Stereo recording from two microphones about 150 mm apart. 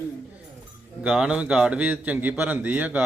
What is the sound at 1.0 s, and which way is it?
Speech, 5° right (ahead or behind).